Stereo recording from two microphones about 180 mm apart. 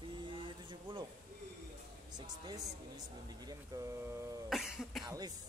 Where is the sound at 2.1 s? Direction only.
20° right (ahead or behind).